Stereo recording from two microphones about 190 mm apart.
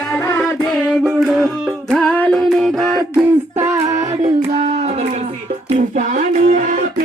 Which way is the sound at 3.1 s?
15° right (ahead or behind).